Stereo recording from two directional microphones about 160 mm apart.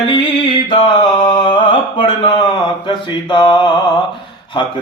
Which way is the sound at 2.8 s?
30° left (ahead or behind).